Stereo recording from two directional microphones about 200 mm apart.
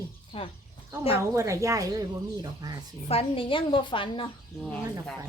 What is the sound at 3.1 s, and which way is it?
A woman's voice, 30° left (ahead or behind).